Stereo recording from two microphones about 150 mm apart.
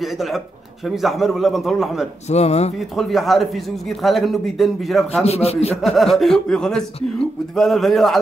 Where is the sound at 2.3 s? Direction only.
45° left (ahead or behind).